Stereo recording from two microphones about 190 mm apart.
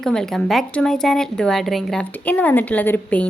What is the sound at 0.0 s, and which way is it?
A woman's voice, 5° left (ahead or behind).